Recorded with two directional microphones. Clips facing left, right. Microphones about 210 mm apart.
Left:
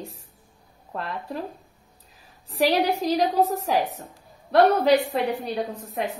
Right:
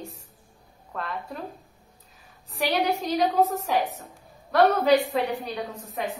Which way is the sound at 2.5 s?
35° left (ahead or behind).